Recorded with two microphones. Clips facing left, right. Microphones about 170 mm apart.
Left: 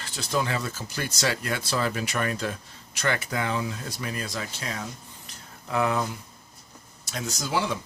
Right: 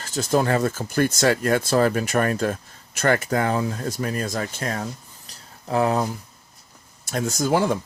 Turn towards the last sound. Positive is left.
turn(degrees=-50)  # may be behind; listen again after turning